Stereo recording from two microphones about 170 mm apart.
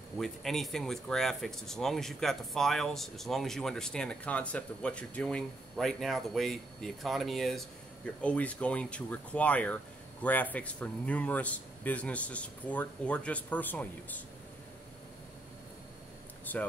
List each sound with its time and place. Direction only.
0.2 s speech: centre (ahead or behind)
16.5 s speech: 10° left (ahead or behind)